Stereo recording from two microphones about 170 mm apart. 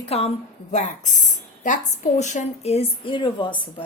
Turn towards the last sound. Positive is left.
turn(degrees=30)  # may be behind; listen again after turning